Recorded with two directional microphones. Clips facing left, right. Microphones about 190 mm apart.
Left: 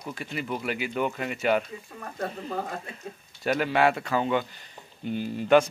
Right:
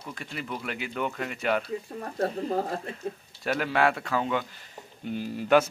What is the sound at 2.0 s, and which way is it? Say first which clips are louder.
Speech: right 4 dB; 35° right (ahead or behind).